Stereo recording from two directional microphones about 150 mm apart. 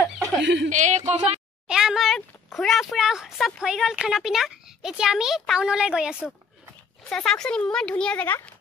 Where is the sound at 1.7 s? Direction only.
5° right (ahead or behind); by 8.4 s 10° left (ahead or behind).